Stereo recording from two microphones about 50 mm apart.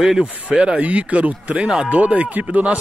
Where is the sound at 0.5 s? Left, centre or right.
Right.